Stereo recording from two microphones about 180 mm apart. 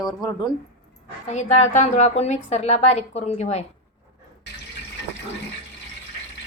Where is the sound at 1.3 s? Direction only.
40° left (ahead or behind).